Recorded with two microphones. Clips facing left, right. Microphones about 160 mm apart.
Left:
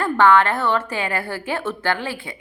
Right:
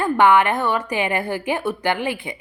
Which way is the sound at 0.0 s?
15° right (ahead or behind).